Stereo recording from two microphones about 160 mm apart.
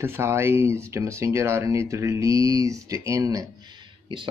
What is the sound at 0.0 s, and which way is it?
Speech, 15° right (ahead or behind).